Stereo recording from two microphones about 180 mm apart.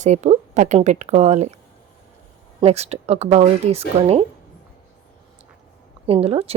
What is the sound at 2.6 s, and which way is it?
Speech, 35° right (ahead or behind).